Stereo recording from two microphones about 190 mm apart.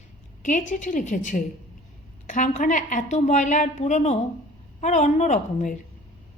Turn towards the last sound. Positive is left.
turn(degrees=40)  # may be behind; listen again after turning